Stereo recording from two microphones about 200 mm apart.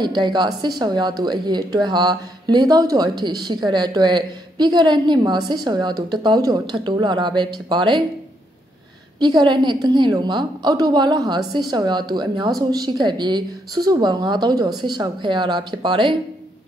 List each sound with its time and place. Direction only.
0.0 s speech: 20° right (ahead or behind)
9.2 s speech: 20° right (ahead or behind)